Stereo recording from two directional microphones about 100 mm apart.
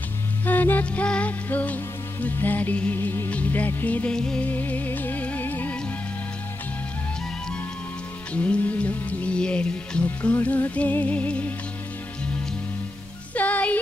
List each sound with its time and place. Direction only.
0.5 s music: 15° left (ahead or behind)
8.3 s music: 15° left (ahead or behind)
13.3 s music: 15° left (ahead or behind)